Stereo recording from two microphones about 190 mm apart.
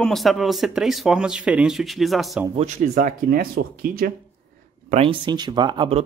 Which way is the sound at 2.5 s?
40° right (ahead or behind).